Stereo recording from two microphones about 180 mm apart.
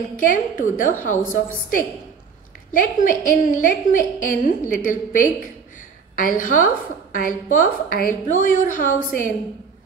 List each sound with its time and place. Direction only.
0.3 s a woman's voice: 45° left (ahead or behind)